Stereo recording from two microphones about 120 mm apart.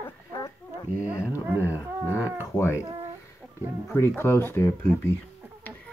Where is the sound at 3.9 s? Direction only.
20° left (ahead or behind).